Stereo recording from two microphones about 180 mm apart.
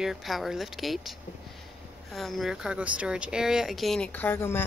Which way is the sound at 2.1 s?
Centre (ahead or behind).